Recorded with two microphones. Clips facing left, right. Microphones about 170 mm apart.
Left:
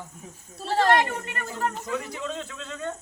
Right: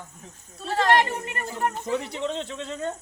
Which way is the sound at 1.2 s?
25° right (ahead or behind).